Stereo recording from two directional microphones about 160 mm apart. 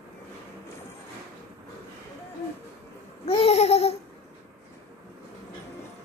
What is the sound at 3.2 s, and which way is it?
Babbling, 40° left (ahead or behind).